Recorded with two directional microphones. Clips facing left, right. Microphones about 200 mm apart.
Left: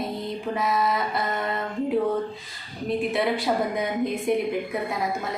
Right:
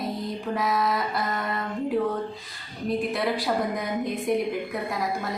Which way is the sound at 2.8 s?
Centre (ahead or behind).